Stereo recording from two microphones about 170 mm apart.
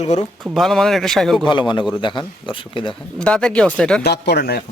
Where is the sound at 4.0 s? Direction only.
75° left (ahead or behind).